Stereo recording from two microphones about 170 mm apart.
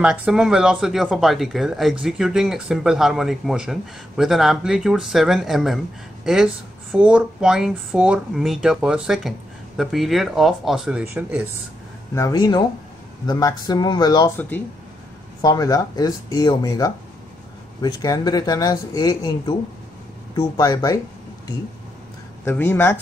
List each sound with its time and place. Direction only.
0.0 s speech: 5° right (ahead or behind)
12.2 s speech: 25° left (ahead or behind)
14.3 s speech: 10° left (ahead or behind)
22.4 s speech: 15° left (ahead or behind)